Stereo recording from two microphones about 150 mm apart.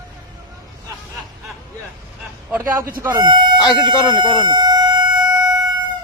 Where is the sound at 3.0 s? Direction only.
25° right (ahead or behind).